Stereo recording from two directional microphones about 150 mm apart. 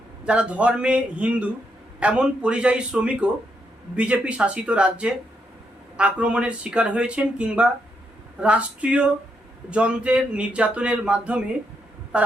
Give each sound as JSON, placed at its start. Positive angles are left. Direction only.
{"t": 0.3, "sound": "speech", "side_deg": -10}